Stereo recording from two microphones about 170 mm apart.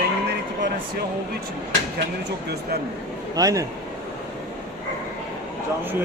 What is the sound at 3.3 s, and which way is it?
Speech, 20° right (ahead or behind).